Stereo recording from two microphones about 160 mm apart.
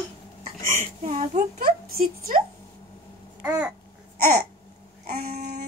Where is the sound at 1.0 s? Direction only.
45° right (ahead or behind).